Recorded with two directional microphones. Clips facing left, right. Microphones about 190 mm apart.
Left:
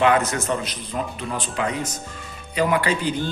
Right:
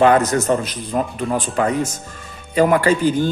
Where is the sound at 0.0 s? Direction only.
40° right (ahead or behind).